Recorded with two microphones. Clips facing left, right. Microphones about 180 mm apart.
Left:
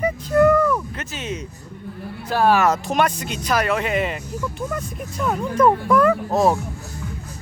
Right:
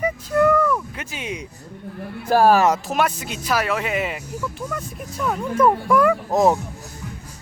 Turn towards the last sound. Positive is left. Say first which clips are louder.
# even
turn(degrees=-15)  # may be behind; listen again after turning